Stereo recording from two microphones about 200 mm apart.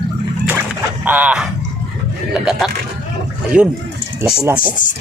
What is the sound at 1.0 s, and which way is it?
Speech, 10° right (ahead or behind).